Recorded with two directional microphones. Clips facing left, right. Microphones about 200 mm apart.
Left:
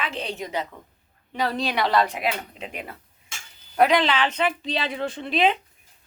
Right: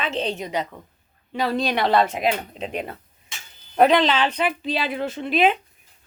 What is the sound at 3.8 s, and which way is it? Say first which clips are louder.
Speech: right 3 dB; 15° left (ahead or behind).